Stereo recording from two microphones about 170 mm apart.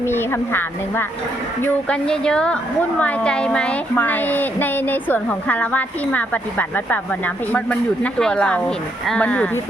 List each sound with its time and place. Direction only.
0.0 s a woman's voice: 15° left (ahead or behind)